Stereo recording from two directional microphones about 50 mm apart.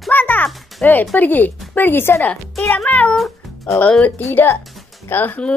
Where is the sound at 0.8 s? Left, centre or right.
Left.